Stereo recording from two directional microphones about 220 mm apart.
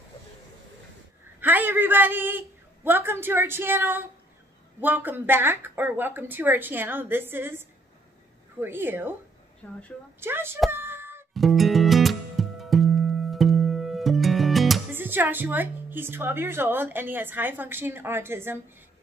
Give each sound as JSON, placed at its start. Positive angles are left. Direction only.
{"t": 1.4, "sound": "a woman's voice", "side_deg": -10}
{"t": 9.6, "sound": "a woman's voice", "side_deg": 10}
{"t": 10.2, "sound": "a woman's voice", "side_deg": -10}
{"t": 10.7, "sound": "a sound", "side_deg": -10}
{"t": 11.3, "sound": "music", "side_deg": 0}